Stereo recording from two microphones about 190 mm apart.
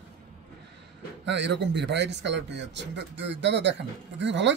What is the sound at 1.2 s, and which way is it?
Speech, 65° right (ahead or behind).